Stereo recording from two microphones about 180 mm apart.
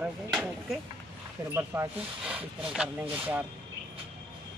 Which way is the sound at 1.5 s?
15° right (ahead or behind).